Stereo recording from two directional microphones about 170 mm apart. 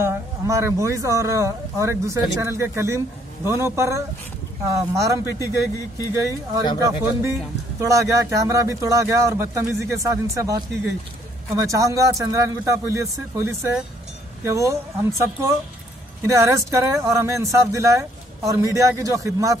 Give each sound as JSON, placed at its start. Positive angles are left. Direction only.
{"t": 0.0, "sound": "speech", "side_deg": -15}
{"t": 6.8, "sound": "speech", "side_deg": -15}